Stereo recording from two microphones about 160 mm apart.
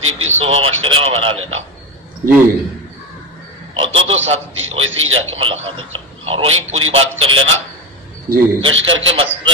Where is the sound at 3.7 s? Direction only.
35° right (ahead or behind).